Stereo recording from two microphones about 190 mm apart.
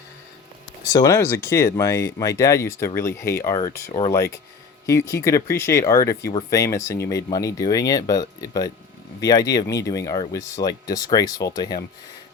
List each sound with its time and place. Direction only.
0.9 s speech: 15° left (ahead or behind)